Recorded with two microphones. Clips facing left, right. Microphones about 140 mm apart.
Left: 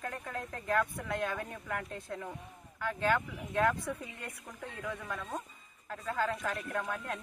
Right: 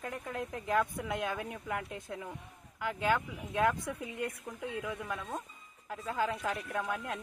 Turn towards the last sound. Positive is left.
turn(degrees=-10)  # may be behind; listen again after turning